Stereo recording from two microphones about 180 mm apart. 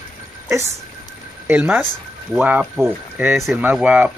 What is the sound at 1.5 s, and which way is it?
Speech, 10° right (ahead or behind).